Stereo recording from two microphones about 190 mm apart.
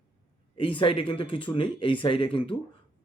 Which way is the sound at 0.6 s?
25° left (ahead or behind).